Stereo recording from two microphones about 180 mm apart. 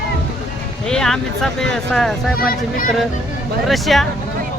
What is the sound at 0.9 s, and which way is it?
Speech, 5° left (ahead or behind).